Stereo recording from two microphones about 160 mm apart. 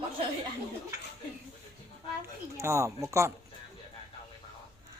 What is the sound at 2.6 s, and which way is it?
Speech, 15° right (ahead or behind).